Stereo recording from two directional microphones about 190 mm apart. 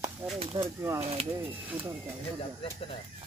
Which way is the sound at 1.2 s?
35° right (ahead or behind).